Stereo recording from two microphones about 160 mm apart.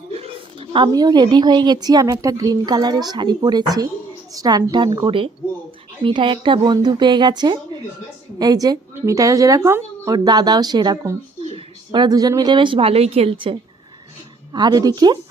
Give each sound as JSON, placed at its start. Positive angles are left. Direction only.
{"t": 0.1, "sound": "a woman's voice", "side_deg": -35}